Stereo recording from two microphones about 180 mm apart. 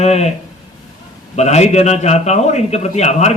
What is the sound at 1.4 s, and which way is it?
A man's voice, 40° left (ahead or behind).